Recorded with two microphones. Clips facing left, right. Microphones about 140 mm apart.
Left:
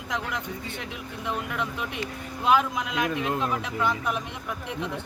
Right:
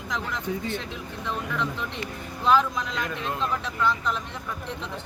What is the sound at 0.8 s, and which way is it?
Speech, 15° left (ahead or behind).